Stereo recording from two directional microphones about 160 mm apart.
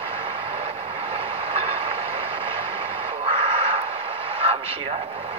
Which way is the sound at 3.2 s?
35° right (ahead or behind).